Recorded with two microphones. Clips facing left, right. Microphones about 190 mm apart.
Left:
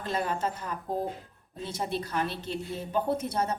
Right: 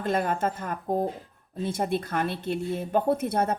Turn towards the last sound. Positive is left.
turn(degrees=-55)  # may be behind; listen again after turning